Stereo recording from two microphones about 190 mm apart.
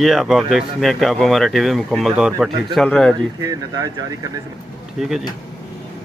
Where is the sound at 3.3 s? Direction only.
15° right (ahead or behind).